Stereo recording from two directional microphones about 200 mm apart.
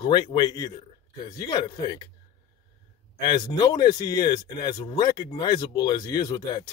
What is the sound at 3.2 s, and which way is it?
Speech, 20° left (ahead or behind).